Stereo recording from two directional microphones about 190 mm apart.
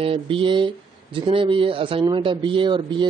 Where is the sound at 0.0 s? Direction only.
30° right (ahead or behind).